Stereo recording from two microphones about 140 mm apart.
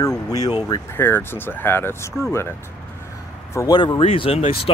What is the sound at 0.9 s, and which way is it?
Speech, 15° left (ahead or behind).